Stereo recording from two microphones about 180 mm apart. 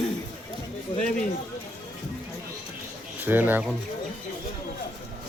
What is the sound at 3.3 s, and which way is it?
Speech, 10° right (ahead or behind).